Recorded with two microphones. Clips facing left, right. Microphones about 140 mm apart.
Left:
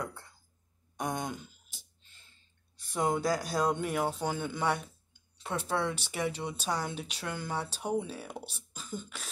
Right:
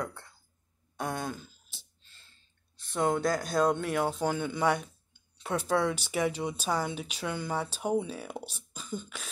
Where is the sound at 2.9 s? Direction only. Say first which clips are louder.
Right 2 dB; 10° left (ahead or behind).